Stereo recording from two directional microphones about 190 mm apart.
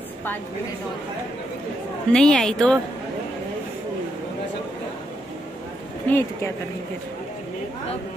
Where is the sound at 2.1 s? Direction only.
5° left (ahead or behind).